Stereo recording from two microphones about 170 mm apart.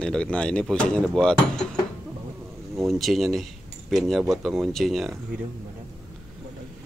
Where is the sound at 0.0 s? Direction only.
5° left (ahead or behind).